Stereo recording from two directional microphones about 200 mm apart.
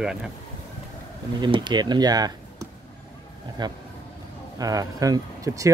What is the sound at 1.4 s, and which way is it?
Speech, 20° right (ahead or behind).